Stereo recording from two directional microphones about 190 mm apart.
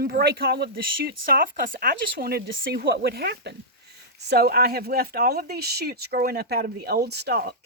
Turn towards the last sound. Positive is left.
turn(degrees=-55)  # may be behind; listen again after turning